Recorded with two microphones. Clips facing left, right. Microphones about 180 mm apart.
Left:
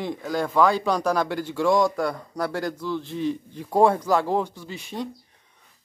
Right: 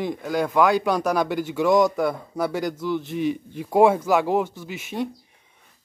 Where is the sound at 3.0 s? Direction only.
20° right (ahead or behind).